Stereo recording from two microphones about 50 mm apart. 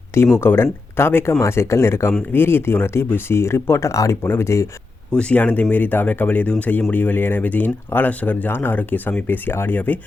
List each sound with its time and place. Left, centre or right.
0.3 s speech: left
1.2 s speech: left
2.3 s speech: left
5.4 s speech: left
9.2 s speech: left